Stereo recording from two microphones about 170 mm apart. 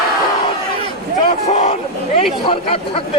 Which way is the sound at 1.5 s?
35° left (ahead or behind).